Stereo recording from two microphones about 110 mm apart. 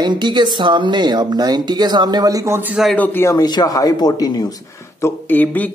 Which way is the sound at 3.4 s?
40° left (ahead or behind).